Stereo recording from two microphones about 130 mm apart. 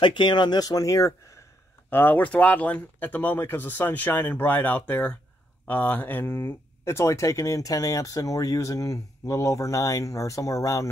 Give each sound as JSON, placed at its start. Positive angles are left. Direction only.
{"t": 0.0, "sound": "speech", "side_deg": 35}